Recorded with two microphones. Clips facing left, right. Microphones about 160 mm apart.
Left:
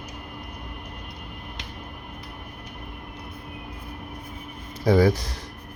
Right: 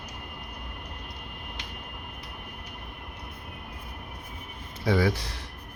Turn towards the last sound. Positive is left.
turn(degrees=40)  # may be behind; listen again after turning